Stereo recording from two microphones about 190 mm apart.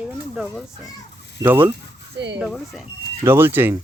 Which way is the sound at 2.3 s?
Centre (ahead or behind).